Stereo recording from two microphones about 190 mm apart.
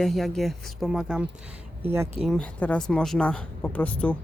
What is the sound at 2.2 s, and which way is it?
A woman's voice, centre (ahead or behind).